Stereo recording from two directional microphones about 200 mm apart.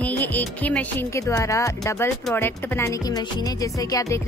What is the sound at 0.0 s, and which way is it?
Speech, 10° left (ahead or behind).